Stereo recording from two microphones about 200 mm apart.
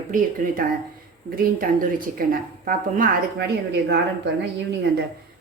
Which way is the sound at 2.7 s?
45° right (ahead or behind).